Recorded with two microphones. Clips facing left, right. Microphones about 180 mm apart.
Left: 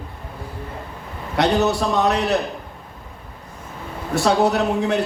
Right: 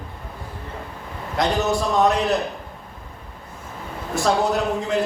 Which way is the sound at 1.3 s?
70° left (ahead or behind).